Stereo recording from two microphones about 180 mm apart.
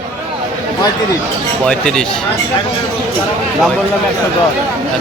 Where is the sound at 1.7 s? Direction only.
5° left (ahead or behind).